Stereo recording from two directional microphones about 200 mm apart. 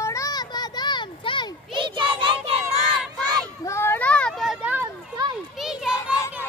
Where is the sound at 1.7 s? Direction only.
25° right (ahead or behind).